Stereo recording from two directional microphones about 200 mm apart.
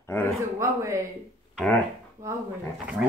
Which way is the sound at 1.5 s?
Centre (ahead or behind).